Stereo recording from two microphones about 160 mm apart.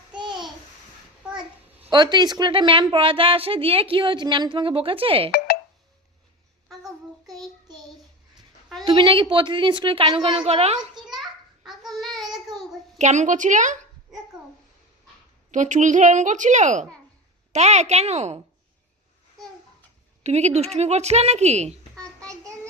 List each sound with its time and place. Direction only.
0.1 s a sound: 30° right (ahead or behind)
1.8 s a woman's voice: 25° right (ahead or behind)
8.8 s a woman's voice: 35° right (ahead or behind)
10.9 s a sound: centre (ahead or behind)
11.6 s child singing: centre (ahead or behind)
13.0 s speech: 45° right (ahead or behind)
15.5 s speech: 50° right (ahead or behind)
20.2 s speech: 45° right (ahead or behind)
21.9 s child singing: 5° left (ahead or behind)
22.3 s child singing: 20° right (ahead or behind)